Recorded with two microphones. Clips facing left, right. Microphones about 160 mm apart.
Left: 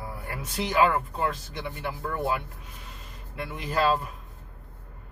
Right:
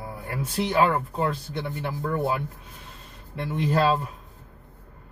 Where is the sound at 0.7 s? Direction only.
30° right (ahead or behind).